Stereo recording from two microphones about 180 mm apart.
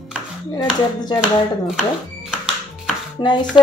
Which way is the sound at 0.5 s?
25° left (ahead or behind).